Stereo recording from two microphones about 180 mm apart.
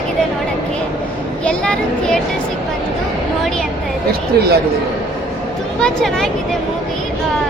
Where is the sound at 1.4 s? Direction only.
5° left (ahead or behind).